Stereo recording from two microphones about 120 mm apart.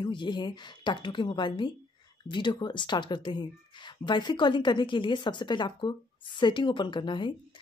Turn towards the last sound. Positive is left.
turn(degrees=40)  # may be behind; listen again after turning